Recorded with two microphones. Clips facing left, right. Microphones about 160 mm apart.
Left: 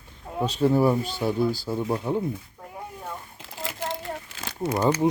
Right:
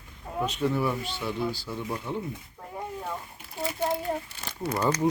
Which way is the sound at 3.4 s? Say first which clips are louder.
Left 4 dB; 90° left.